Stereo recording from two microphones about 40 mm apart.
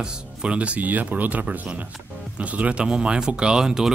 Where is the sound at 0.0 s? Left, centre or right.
Right.